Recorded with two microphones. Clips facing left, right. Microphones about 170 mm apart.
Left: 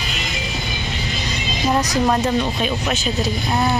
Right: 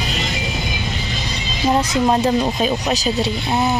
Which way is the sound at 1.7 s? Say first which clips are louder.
Right 2 dB; 25° right (ahead or behind).